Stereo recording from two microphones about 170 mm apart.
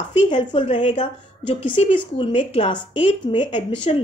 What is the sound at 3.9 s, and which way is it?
Speech, 40° left (ahead or behind).